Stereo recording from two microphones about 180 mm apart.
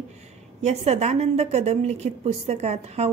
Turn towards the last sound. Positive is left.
turn(degrees=-35)  # may be behind; listen again after turning